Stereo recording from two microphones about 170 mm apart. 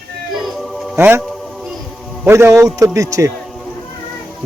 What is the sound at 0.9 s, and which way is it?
Speech, 10° right (ahead or behind).